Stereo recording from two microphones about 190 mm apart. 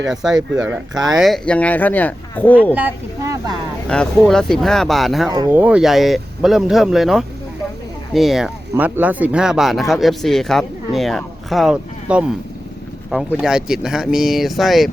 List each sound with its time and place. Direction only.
0.1 s speech: centre (ahead or behind)
2.7 s speech: 15° right (ahead or behind)
3.8 s speech: 5° left (ahead or behind)
5.3 s speech: 20° right (ahead or behind)
5.5 s speech: 5° right (ahead or behind)